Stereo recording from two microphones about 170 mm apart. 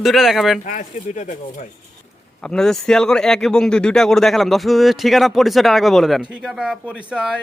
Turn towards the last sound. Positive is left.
turn(degrees=-5)  # may be behind; listen again after turning